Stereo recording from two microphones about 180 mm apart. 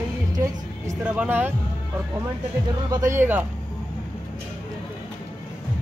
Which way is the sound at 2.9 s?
15° right (ahead or behind).